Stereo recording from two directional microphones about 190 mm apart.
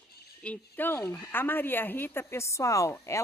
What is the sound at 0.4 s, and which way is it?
A woman's voice, 10° left (ahead or behind).